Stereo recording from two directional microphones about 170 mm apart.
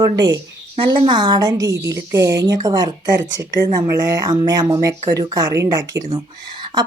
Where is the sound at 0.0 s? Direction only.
25° right (ahead or behind).